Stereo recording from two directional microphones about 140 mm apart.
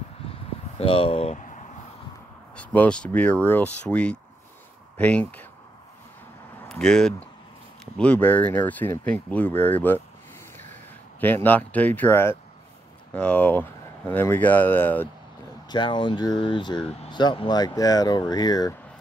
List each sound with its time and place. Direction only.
0.7 s speech: 40° left (ahead or behind)
2.5 s speech: 10° left (ahead or behind)
6.7 s speech: 5° left (ahead or behind)
11.1 s speech: 15° left (ahead or behind)
15.7 s speech: 35° left (ahead or behind)